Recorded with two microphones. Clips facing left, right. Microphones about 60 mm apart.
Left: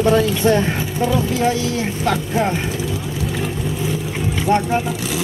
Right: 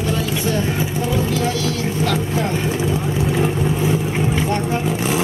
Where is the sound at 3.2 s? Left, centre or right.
Right.